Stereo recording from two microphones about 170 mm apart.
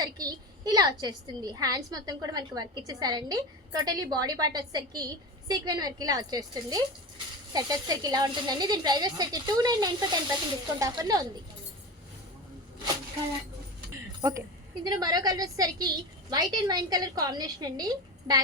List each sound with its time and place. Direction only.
0.0 s a woman's voice: 20° right (ahead or behind)
14.2 s a woman's voice: 15° right (ahead or behind)